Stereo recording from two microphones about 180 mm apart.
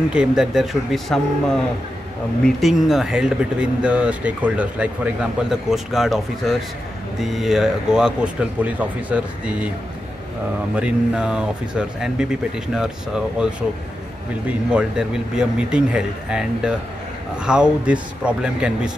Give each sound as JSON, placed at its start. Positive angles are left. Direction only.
{"t": 0.1, "sound": "speech", "side_deg": -5}
{"t": 2.4, "sound": "speech", "side_deg": 0}
{"t": 10.8, "sound": "speech", "side_deg": -5}
{"t": 14.7, "sound": "speech", "side_deg": -5}